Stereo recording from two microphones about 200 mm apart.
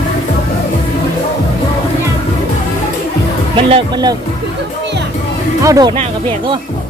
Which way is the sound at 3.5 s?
25° right (ahead or behind).